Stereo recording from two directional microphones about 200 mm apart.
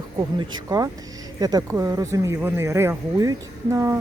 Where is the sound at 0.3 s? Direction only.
20° right (ahead or behind).